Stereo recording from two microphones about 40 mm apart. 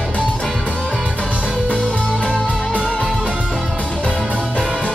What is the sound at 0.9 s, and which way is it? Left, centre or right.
Music, right.